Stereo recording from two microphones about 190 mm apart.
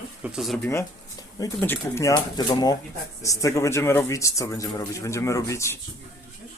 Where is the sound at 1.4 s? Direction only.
10° left (ahead or behind).